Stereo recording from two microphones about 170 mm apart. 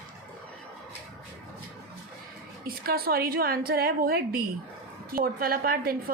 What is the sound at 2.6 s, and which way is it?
A woman's voice, 60° right (ahead or behind).